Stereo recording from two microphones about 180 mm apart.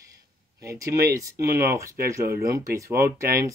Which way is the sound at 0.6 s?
20° right (ahead or behind).